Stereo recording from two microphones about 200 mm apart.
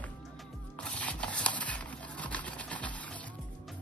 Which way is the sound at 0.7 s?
5° left (ahead or behind).